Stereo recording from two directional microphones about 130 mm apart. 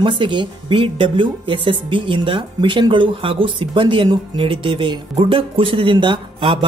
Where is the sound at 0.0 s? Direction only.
40° right (ahead or behind).